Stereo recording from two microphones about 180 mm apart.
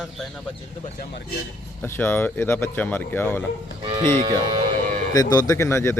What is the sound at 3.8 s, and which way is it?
Speech, 25° right (ahead or behind).